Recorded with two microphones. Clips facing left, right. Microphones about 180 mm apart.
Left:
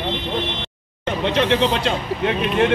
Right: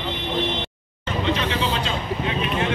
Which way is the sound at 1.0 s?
70° left (ahead or behind).